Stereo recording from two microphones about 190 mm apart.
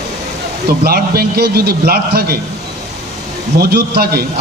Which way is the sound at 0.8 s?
55° right (ahead or behind).